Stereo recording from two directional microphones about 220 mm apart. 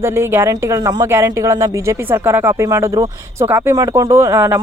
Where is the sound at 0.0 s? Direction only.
10° right (ahead or behind).